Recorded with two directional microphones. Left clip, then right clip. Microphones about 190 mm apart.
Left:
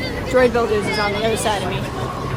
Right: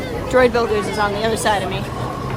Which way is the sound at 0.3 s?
Centre (ahead or behind).